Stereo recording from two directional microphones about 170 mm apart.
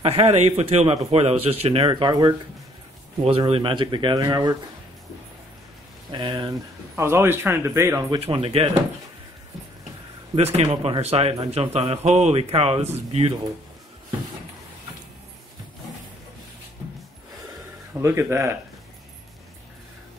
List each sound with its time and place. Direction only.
0.0 s speech: 35° right (ahead or behind)
6.1 s speech: 25° right (ahead or behind)
7.0 s speech: 15° right (ahead or behind)
8.1 s speech: 35° right (ahead or behind)
10.3 s speech: 35° right (ahead or behind)
18.0 s speech: 15° right (ahead or behind)